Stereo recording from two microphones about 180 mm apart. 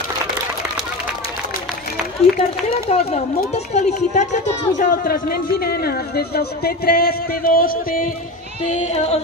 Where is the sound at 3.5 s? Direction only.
40° left (ahead or behind).